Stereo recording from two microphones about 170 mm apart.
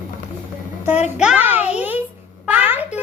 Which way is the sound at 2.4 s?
10° right (ahead or behind).